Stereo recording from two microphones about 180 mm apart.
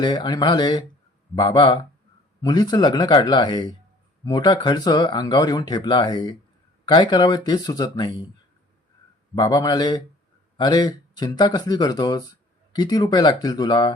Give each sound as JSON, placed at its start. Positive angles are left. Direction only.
{"t": 0.0, "sound": "speech", "side_deg": 25}
{"t": 9.3, "sound": "speech", "side_deg": 25}